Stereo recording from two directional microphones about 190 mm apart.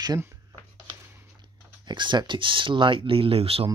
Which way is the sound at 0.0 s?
15° right (ahead or behind).